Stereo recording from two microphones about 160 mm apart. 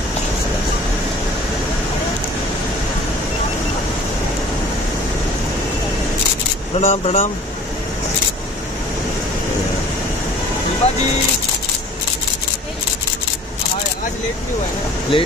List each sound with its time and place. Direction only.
6.8 s speech: 40° left (ahead or behind)
10.8 s speech: 40° left (ahead or behind)
15.1 s speech: 35° left (ahead or behind)